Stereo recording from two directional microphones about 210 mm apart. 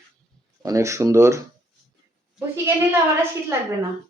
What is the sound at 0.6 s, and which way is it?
Speech, 15° right (ahead or behind).